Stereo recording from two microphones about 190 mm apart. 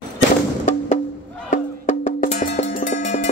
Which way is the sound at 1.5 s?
40° left (ahead or behind).